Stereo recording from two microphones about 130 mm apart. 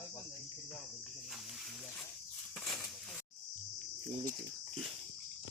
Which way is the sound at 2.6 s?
Centre (ahead or behind).